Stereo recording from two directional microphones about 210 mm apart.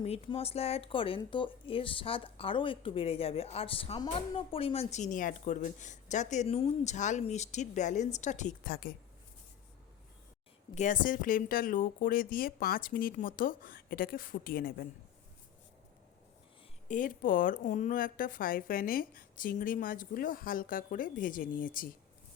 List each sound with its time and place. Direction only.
0.0 s speech: 30° left (ahead or behind); by 8.9 s 45° left (ahead or behind)
10.8 s speech: 40° left (ahead or behind)
16.9 s speech: 40° left (ahead or behind)